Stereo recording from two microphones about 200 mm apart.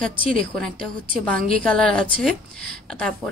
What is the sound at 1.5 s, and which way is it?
Speech, 5° left (ahead or behind).